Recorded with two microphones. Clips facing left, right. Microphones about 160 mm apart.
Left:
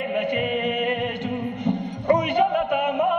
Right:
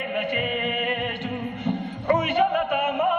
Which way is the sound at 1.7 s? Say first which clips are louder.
Left 2 dB; 15° left (ahead or behind).